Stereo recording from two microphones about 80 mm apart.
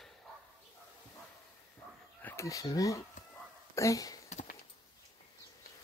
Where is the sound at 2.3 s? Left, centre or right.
Left.